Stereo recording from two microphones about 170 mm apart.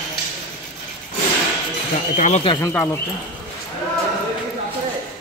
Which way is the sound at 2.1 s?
45° left (ahead or behind).